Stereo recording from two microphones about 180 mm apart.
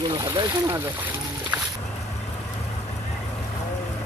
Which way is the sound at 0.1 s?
20° right (ahead or behind).